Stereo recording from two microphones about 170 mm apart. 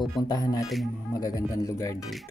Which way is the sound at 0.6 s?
Centre (ahead or behind).